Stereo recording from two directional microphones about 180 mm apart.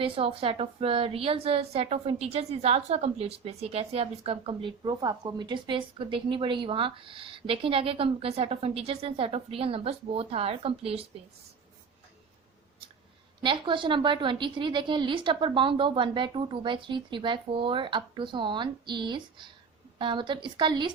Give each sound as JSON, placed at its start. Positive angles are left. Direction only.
{"t": 0.0, "sound": "a woman's voice", "side_deg": -30}
{"t": 13.4, "sound": "a woman's voice", "side_deg": -25}